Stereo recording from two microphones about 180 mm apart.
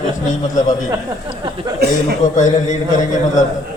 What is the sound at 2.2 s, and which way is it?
A man's voice, 45° left (ahead or behind).